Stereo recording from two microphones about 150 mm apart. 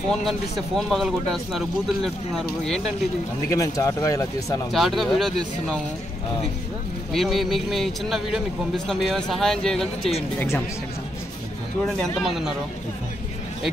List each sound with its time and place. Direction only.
0.1 s speech: centre (ahead or behind)
3.4 s speech: 20° left (ahead or behind)
4.7 s speech: centre (ahead or behind)
7.1 s speech: centre (ahead or behind)
11.8 s speech: centre (ahead or behind)